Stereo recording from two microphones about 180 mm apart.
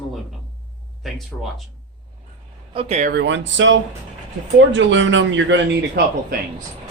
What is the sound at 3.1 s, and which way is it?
Speech, 75° right (ahead or behind).